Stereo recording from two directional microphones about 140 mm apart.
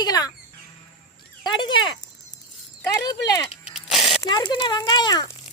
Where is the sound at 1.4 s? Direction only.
35° left (ahead or behind).